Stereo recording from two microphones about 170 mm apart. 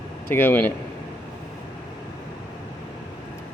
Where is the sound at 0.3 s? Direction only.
10° left (ahead or behind).